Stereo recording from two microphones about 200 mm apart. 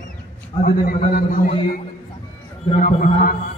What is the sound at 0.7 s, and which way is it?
Speech, 45° left (ahead or behind).